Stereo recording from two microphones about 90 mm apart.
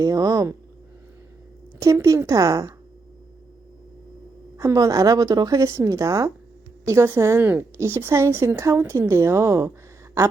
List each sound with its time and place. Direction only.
0.0 s a woman's voice: 40° right (ahead or behind)
1.8 s a woman's voice: 35° right (ahead or behind)
4.5 s a woman's voice: 40° right (ahead or behind)